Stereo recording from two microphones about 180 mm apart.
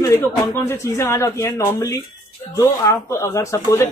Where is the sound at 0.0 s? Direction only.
15° left (ahead or behind).